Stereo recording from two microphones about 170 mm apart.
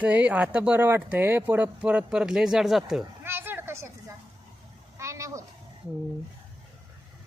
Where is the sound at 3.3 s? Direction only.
10° right (ahead or behind).